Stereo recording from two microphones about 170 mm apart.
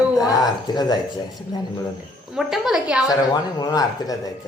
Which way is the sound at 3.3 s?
25° left (ahead or behind).